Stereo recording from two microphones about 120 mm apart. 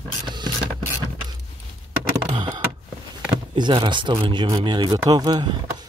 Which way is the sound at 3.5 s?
40° right (ahead or behind).